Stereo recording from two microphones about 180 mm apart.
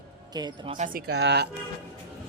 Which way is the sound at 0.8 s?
55° right (ahead or behind).